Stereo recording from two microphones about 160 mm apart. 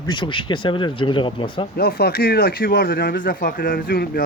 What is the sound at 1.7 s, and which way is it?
Speech, 75° left (ahead or behind).